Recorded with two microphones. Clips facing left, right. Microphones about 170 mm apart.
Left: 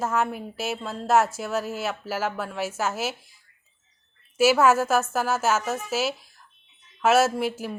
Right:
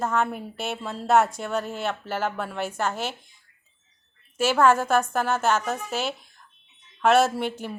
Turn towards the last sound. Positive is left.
turn(degrees=5)  # may be behind; listen again after turning